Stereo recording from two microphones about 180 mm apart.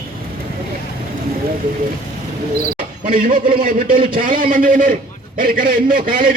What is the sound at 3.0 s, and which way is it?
A man's voice, 50° right (ahead or behind).